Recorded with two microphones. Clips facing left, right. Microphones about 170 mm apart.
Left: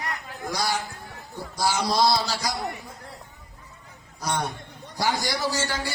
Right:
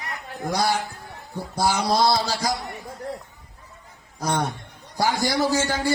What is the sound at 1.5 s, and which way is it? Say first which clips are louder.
Speech: right 3 dB; 55° right (ahead or behind).